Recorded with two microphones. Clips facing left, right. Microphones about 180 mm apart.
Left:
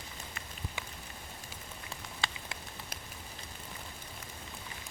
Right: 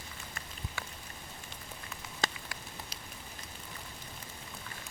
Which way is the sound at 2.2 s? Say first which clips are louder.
Right 4 dB; 40° right (ahead or behind).